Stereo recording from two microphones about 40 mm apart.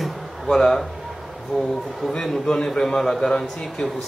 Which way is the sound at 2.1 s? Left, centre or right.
Centre.